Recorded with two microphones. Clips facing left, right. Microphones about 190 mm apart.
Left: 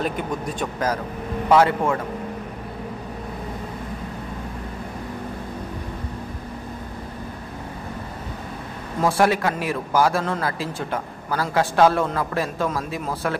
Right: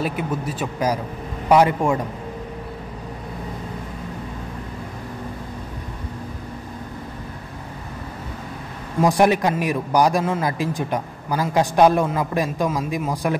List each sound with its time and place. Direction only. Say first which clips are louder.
0.0 s a man's voice: right 1 dB; 5° right (ahead or behind)
9.0 s a man's voice: right 3 dB; 15° right (ahead or behind)